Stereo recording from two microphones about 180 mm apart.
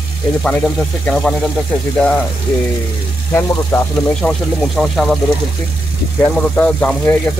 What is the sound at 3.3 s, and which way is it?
Speech, 15° left (ahead or behind).